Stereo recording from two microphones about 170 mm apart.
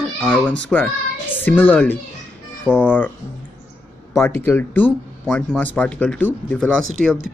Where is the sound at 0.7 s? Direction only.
5° left (ahead or behind).